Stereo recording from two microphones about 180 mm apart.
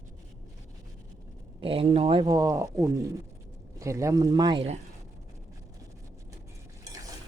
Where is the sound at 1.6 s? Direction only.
30° right (ahead or behind).